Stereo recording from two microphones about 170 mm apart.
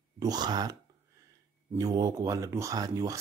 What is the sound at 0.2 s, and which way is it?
Speech, 25° right (ahead or behind).